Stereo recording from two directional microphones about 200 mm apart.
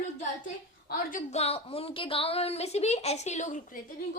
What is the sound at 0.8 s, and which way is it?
A woman's voice, 40° left (ahead or behind).